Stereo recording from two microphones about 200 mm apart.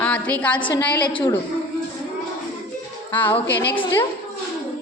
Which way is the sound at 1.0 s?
25° left (ahead or behind).